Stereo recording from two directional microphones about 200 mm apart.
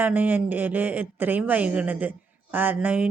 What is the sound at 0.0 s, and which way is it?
A woman's voice, 10° right (ahead or behind).